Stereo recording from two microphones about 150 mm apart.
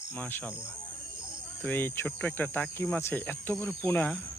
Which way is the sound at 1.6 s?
15° left (ahead or behind).